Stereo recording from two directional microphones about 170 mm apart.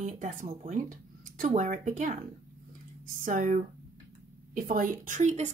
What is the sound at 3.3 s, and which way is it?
Speech, 50° right (ahead or behind).